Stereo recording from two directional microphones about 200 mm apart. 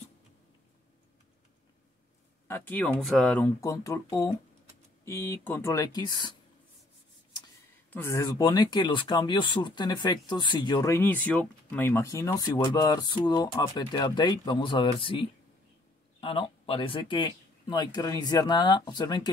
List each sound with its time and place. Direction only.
2.4 s speech: 10° left (ahead or behind)
7.9 s speech: 15° left (ahead or behind)